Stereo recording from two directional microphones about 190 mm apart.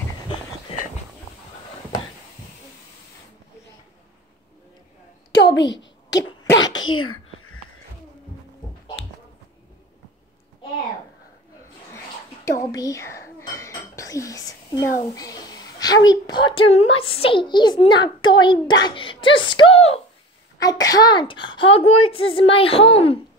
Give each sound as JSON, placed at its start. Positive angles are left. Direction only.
{"t": 0.7, "sound": "a sound", "side_deg": 30}
{"t": 5.6, "sound": "a woman's voice", "side_deg": 70}
{"t": 6.0, "sound": "cough", "side_deg": 20}
{"t": 6.6, "sound": "sneeze", "side_deg": 20}
{"t": 6.9, "sound": "sneeze", "side_deg": 90}
{"t": 12.4, "sound": "speech", "side_deg": 15}
{"t": 20.5, "sound": "a child's voice", "side_deg": 20}